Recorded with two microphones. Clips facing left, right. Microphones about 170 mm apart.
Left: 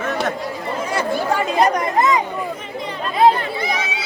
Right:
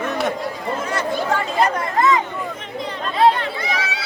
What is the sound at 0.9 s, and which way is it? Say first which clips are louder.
Chatter: left 3 dB; 10° left (ahead or behind).